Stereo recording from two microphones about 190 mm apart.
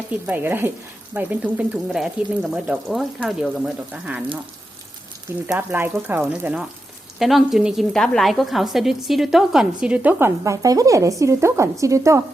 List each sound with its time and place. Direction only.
0.3 s a woman's voice: 10° right (ahead or behind)
5.5 s a woman's voice: 10° right (ahead or behind)